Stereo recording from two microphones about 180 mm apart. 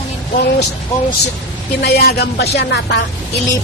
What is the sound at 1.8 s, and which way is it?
Speech, 65° left (ahead or behind).